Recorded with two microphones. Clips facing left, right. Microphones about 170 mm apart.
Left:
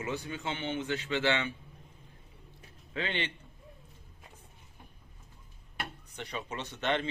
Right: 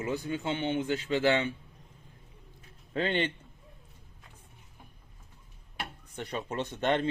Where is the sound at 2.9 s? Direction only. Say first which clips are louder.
Right 6 dB; 45° right (ahead or behind).